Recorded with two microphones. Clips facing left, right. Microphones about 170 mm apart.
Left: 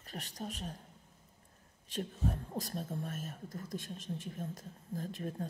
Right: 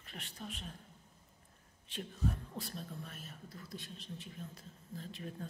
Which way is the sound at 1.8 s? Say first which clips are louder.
Left 2 dB; 40° left (ahead or behind).